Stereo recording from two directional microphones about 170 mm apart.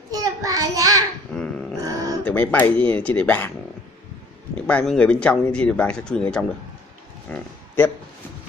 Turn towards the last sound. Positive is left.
turn(degrees=10)  # may be behind; listen again after turning